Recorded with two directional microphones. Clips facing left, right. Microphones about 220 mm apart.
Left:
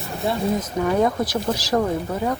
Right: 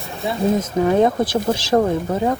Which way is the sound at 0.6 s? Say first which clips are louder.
Right 4 dB; 25° right (ahead or behind).